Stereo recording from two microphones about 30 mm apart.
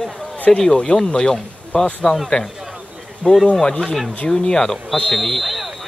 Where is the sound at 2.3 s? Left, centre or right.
Left.